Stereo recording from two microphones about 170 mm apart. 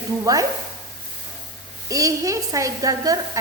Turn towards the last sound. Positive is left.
turn(degrees=-20)  # may be behind; listen again after turning